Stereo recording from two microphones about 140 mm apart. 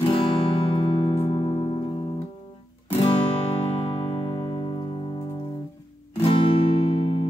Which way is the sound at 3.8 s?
40° left (ahead or behind).